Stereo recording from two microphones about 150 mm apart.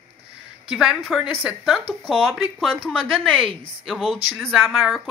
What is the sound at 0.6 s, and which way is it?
Speech, 5° right (ahead or behind).